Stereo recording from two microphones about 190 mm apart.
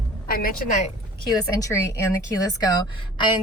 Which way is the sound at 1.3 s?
20° left (ahead or behind).